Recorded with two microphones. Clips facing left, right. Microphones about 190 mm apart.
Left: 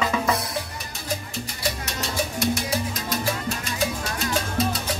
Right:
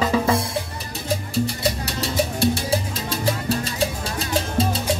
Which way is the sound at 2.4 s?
30° right (ahead or behind).